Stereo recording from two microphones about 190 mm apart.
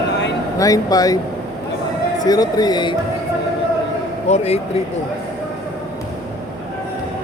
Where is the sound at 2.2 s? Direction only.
20° left (ahead or behind).